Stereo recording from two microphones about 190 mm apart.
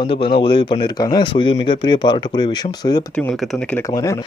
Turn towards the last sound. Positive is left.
turn(degrees=20)  # may be behind; listen again after turning